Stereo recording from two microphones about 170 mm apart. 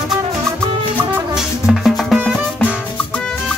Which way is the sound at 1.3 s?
Centre (ahead or behind).